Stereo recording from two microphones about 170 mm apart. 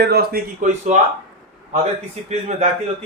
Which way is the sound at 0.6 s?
45° right (ahead or behind).